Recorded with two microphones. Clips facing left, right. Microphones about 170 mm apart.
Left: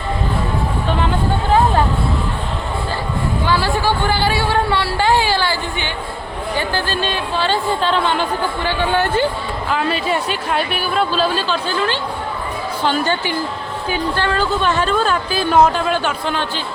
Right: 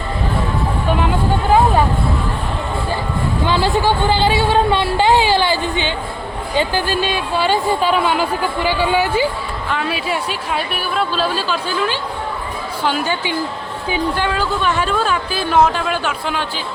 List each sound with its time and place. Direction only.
3.4 s a woman's voice: 20° right (ahead or behind); by 16.4 s centre (ahead or behind)